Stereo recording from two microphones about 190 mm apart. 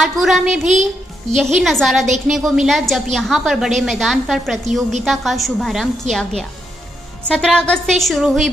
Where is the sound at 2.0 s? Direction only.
40° right (ahead or behind).